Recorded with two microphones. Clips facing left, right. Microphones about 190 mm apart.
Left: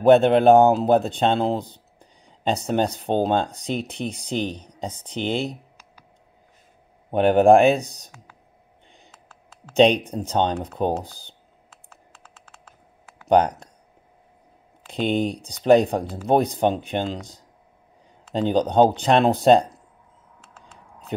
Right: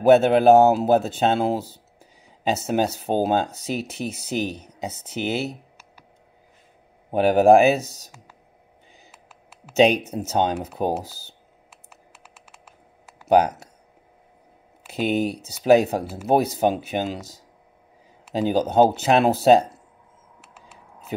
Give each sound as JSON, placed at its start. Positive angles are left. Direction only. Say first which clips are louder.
{"t": 0.0, "sound": "speech", "louder": "even", "side_deg": -5}
{"t": 7.1, "sound": "speech", "louder": "even", "side_deg": -5}
{"t": 11.9, "sound": "computer keyboard", "louder": "even", "side_deg": -10}
{"t": 13.3, "sound": "speech", "louder": "even", "side_deg": -5}
{"t": 14.9, "sound": "speech", "louder": "even", "side_deg": -5}
{"t": 20.3, "sound": "a sound", "louder": "even", "side_deg": -10}